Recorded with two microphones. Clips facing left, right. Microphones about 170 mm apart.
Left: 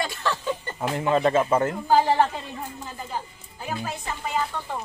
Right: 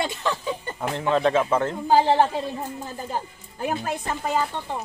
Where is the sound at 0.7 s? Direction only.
5° left (ahead or behind).